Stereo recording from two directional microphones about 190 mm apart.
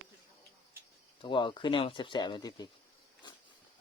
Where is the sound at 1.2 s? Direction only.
25° left (ahead or behind).